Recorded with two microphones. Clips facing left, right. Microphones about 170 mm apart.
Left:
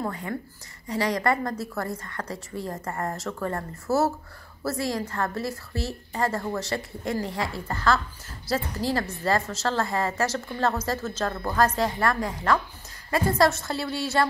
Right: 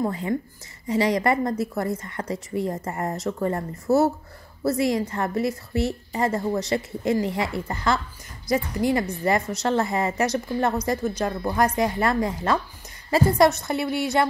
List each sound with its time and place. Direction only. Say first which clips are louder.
0.0 s a woman's voice: right 6 dB; 20° right (ahead or behind)